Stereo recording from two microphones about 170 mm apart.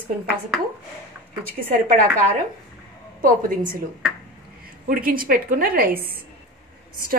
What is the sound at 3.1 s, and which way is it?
Speech, 55° right (ahead or behind).